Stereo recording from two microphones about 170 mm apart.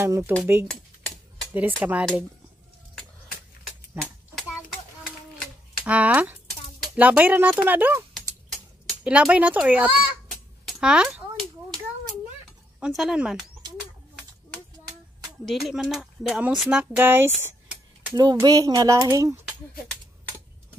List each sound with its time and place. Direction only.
0.0 s speech: 20° right (ahead or behind)
1.8 s speech: 10° right (ahead or behind)
5.9 s speech: 10° right (ahead or behind)
10.7 s a sound: 5° right (ahead or behind)
12.8 s speech: centre (ahead or behind)
15.4 s speech: centre (ahead or behind); by 19.3 s 20° right (ahead or behind)